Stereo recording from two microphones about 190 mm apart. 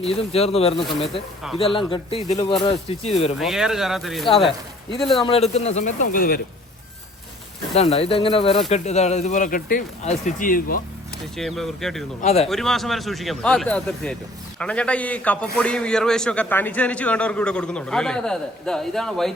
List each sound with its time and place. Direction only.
0.0 s speech: 30° left (ahead or behind)
3.3 s a man's voice: centre (ahead or behind)
5.2 s speech: 30° left (ahead or behind); by 6.4 s 50° left (ahead or behind)
7.7 s speech: 35° left (ahead or behind)
11.3 s a man's voice: centre (ahead or behind)
12.2 s speech: 30° left (ahead or behind)
12.5 s a man's voice: centre (ahead or behind)